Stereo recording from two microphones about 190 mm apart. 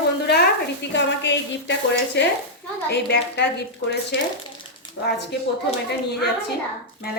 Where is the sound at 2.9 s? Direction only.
60° left (ahead or behind).